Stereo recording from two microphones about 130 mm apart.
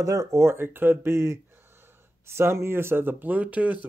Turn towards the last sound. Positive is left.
turn(degrees=-10)  # may be behind; listen again after turning